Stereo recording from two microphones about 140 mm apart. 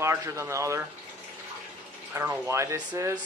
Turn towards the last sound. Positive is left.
turn(degrees=-20)  # may be behind; listen again after turning